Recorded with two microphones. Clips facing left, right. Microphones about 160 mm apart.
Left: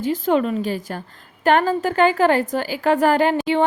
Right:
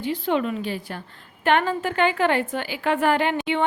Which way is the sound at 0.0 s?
45° left (ahead or behind).